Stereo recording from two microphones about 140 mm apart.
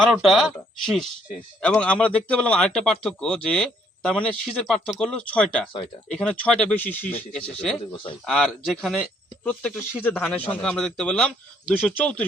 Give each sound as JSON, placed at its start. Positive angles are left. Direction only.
{"t": 0.0, "sound": "a man's voice", "side_deg": 0}